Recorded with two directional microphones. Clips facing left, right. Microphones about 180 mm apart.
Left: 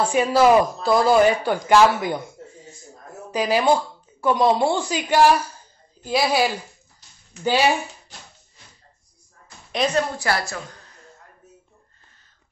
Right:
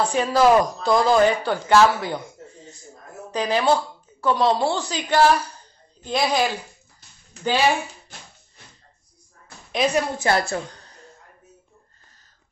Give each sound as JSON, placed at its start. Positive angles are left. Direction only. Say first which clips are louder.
{"t": 0.0, "sound": "speech", "louder": "left 1 dB", "side_deg": 10}
{"t": 9.9, "sound": "a woman's voice", "louder": "right 2 dB", "side_deg": -25}